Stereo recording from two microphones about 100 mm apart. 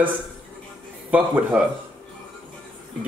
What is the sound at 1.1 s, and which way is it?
Speech, 15° right (ahead or behind).